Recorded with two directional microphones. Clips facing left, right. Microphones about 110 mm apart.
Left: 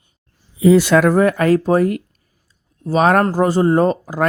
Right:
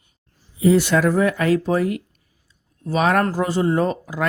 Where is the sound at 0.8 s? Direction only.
70° left (ahead or behind).